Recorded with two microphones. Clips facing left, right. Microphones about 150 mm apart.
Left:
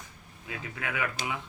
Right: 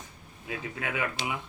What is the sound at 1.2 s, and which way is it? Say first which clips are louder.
Speech: right 1 dB; 45° left (ahead or behind).